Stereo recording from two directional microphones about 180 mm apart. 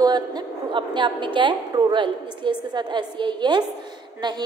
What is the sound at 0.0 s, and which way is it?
A woman's voice, 20° right (ahead or behind).